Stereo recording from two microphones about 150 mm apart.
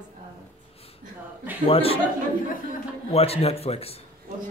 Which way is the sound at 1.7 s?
40° left (ahead or behind).